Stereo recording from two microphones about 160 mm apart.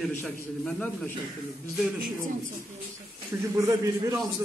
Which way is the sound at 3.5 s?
20° right (ahead or behind).